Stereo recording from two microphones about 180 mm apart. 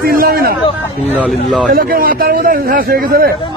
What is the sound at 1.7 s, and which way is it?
A man's voice, 55° right (ahead or behind).